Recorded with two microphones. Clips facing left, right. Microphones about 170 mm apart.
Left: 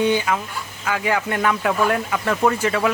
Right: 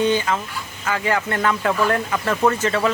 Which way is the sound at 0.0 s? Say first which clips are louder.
Even; 10° left (ahead or behind).